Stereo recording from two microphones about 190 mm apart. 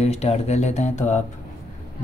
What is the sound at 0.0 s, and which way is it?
Speech, 35° left (ahead or behind).